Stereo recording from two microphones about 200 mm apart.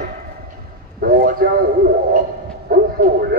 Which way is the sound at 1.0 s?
45° right (ahead or behind).